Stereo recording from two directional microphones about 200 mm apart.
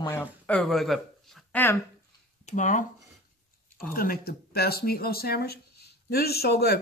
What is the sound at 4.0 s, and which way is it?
Speech, 50° left (ahead or behind).